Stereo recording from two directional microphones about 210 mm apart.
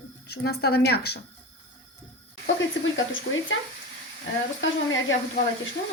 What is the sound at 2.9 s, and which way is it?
Speech, 65° left (ahead or behind).